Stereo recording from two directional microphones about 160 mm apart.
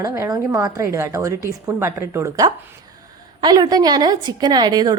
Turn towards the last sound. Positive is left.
turn(degrees=-25)  # may be behind; listen again after turning